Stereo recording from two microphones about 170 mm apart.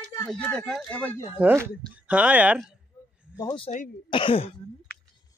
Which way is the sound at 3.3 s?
20° left (ahead or behind).